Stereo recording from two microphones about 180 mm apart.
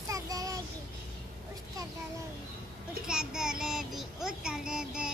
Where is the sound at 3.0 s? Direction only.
5° right (ahead or behind).